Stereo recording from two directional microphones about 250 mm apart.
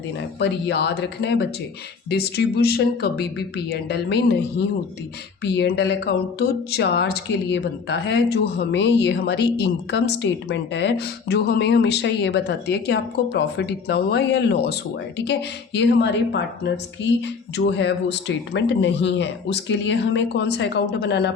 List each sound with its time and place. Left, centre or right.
0.2 s a woman's voice: left
5.4 s a woman's voice: left